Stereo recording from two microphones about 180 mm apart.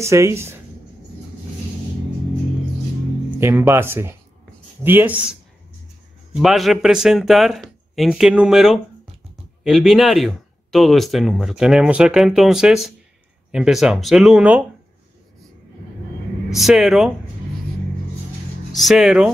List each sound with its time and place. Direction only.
0.0 s speech: 15° right (ahead or behind)
3.3 s speech: 15° right (ahead or behind)
16.4 s speech: centre (ahead or behind)
18.8 s speech: centre (ahead or behind)